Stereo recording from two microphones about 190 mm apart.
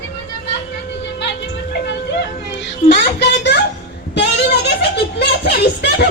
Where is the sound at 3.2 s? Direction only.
65° left (ahead or behind).